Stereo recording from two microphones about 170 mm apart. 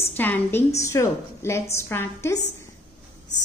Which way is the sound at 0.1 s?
10° left (ahead or behind).